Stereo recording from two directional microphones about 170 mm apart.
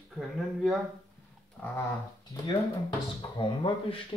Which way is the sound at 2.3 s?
25° left (ahead or behind).